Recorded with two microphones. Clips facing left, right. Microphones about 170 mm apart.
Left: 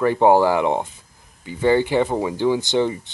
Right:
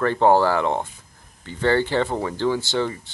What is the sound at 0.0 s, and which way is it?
Speech, 15° left (ahead or behind).